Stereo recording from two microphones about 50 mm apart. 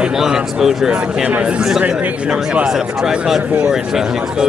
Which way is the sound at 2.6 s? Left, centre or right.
Centre.